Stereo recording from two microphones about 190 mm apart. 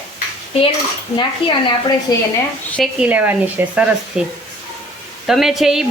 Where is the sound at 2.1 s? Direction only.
20° left (ahead or behind).